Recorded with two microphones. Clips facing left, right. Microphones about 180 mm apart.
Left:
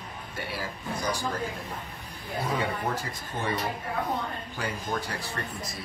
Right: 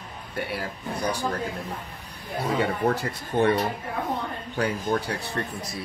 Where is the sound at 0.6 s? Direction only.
60° right (ahead or behind).